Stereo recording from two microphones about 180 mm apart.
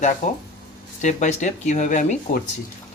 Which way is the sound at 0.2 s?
40° left (ahead or behind).